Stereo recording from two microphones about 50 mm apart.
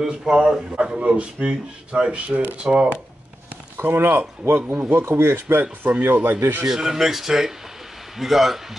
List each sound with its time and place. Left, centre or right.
0.0 s speech: centre
3.7 s speech: right
6.7 s a man's voice: centre